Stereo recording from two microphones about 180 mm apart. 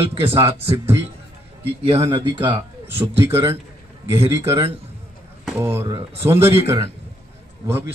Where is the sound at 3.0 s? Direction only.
10° right (ahead or behind).